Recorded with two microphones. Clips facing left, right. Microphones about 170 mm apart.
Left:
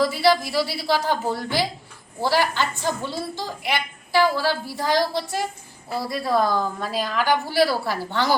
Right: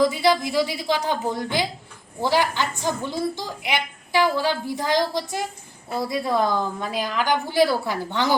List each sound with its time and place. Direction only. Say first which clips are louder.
0.0 s a woman's voice: even; 20° right (ahead or behind)